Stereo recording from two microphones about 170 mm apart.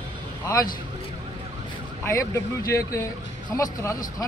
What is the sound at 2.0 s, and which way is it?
Speech, 15° left (ahead or behind).